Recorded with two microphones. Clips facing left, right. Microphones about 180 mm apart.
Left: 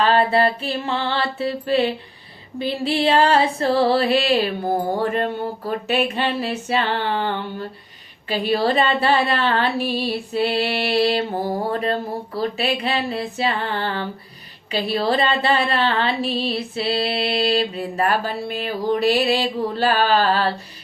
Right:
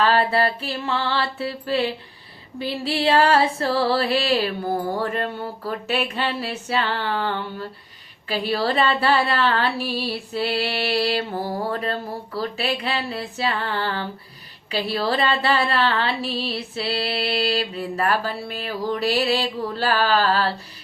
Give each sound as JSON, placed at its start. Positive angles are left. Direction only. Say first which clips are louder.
{"t": 0.0, "sound": "speech", "louder": "left 2 dB", "side_deg": 20}